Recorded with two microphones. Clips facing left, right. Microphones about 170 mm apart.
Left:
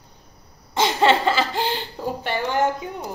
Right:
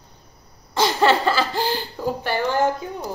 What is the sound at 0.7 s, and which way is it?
Speech, 20° left (ahead or behind).